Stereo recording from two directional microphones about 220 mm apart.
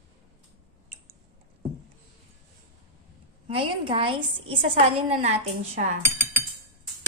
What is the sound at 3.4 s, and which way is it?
A woman's voice, 25° right (ahead or behind).